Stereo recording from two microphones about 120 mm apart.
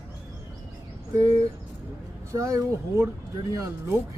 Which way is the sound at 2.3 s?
25° right (ahead or behind).